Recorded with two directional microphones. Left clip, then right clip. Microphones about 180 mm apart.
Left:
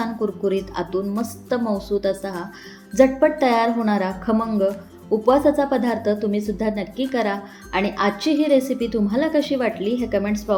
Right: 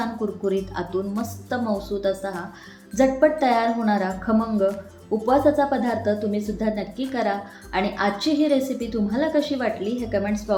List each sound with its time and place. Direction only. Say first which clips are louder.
0.0 s a woman's voice: left 3 dB; 20° left (ahead or behind)